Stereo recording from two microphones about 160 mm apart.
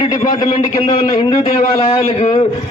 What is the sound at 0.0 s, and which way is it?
A man's voice, 25° left (ahead or behind).